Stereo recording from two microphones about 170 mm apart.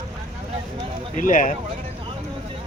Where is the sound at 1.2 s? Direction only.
50° left (ahead or behind).